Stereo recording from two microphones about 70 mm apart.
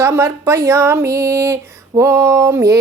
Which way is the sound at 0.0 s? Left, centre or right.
Right.